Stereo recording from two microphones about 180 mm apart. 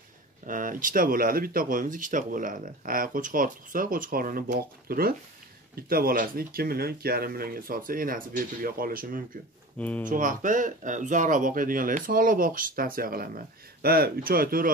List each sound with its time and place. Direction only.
0.5 s speech: 50° right (ahead or behind)
9.8 s speech: 10° left (ahead or behind)
10.0 s speech: 45° right (ahead or behind)